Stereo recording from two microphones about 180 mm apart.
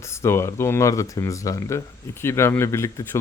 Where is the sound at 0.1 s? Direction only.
15° left (ahead or behind).